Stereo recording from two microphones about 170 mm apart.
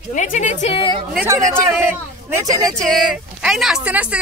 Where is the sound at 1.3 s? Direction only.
15° right (ahead or behind).